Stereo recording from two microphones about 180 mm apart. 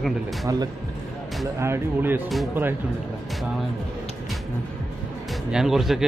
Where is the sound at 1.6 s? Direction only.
15° right (ahead or behind).